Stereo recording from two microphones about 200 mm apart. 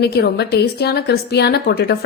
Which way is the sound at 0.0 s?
55° left (ahead or behind).